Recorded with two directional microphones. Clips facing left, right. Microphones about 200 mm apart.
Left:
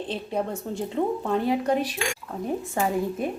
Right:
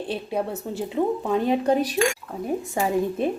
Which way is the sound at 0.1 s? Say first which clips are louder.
Right 2 dB; 10° right (ahead or behind).